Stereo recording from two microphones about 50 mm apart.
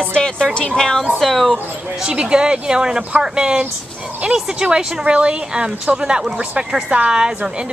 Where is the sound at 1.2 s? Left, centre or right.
Centre.